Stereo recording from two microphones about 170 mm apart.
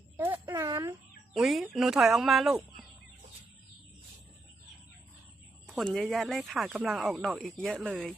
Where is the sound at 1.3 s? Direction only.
Centre (ahead or behind).